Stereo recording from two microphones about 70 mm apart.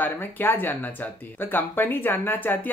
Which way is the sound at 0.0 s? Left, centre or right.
Left.